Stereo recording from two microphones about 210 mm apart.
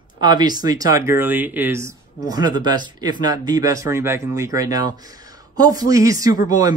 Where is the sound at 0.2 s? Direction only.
20° right (ahead or behind).